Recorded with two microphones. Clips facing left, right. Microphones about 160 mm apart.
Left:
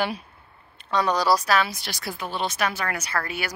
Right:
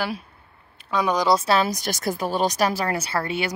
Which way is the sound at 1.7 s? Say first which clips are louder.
Right 8 dB; 45° right (ahead or behind).